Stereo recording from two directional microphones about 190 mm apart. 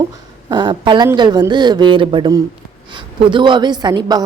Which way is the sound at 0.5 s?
25° right (ahead or behind).